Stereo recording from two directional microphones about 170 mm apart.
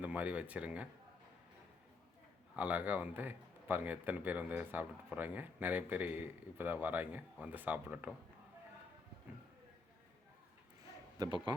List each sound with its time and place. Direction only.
0.0 s speech: 10° right (ahead or behind)
2.6 s speech: 10° right (ahead or behind)